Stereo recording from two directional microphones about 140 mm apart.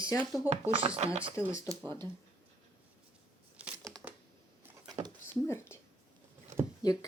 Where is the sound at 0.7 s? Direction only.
45° right (ahead or behind).